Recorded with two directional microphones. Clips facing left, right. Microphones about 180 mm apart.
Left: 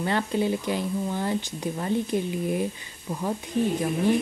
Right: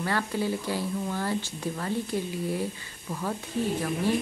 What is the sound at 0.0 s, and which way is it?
A woman's voice, 20° left (ahead or behind).